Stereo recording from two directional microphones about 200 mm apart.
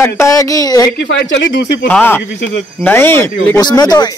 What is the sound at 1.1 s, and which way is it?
Speech, 60° left (ahead or behind).